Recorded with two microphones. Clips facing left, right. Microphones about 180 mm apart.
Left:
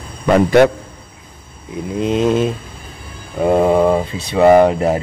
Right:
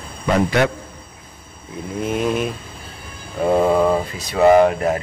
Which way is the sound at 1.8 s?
20° left (ahead or behind).